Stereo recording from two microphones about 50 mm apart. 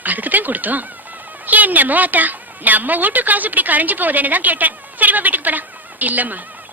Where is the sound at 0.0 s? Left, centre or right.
Right.